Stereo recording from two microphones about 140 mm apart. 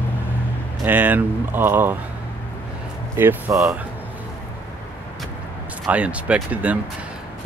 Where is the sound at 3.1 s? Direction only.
20° right (ahead or behind).